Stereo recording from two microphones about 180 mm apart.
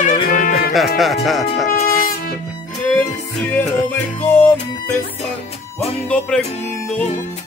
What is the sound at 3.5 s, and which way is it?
Music, 5° left (ahead or behind).